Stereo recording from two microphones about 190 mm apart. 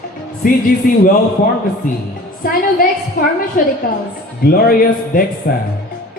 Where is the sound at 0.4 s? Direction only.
45° left (ahead or behind).